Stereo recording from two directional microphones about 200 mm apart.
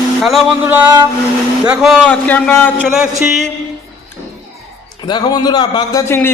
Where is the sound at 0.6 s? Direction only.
10° right (ahead or behind).